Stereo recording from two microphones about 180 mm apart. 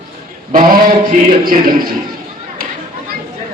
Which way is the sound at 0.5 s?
50° right (ahead or behind).